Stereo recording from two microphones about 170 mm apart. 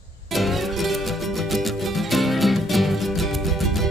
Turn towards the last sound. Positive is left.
turn(degrees=0)  # may be behind; listen again after turning